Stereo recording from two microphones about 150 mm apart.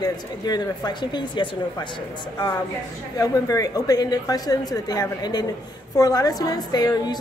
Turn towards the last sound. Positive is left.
turn(degrees=25)  # may be behind; listen again after turning